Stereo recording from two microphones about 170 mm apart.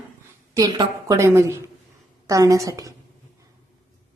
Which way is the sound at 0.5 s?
20° right (ahead or behind).